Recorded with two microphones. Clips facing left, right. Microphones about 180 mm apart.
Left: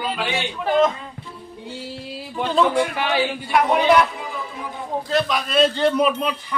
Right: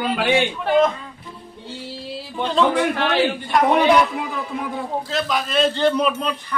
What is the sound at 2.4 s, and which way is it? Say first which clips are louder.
Speech: right 1 dB; 10° left (ahead or behind).